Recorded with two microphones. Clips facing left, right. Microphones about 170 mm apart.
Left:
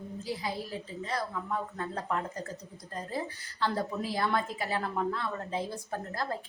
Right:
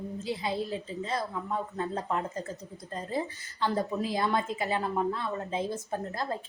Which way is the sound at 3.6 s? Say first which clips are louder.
Right 2 dB; 20° right (ahead or behind).